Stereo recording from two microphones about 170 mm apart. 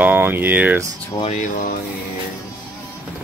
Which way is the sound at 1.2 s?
45° left (ahead or behind).